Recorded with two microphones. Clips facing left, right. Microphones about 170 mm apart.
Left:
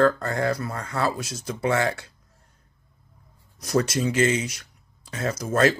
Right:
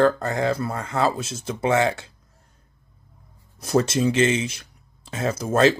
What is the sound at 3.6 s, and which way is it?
Speech, 25° right (ahead or behind).